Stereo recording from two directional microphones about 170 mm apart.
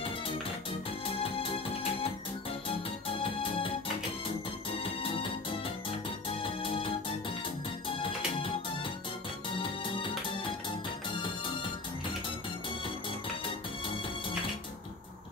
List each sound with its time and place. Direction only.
1.0 s music: 30° left (ahead or behind)
6.4 s music: 30° left (ahead or behind)
8.0 s music: 30° left (ahead or behind)